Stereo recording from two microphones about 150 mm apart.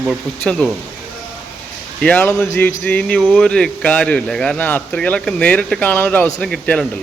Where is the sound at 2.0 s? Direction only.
10° left (ahead or behind).